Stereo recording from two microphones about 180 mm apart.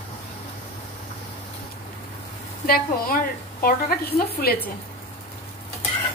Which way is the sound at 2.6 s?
55° left (ahead or behind).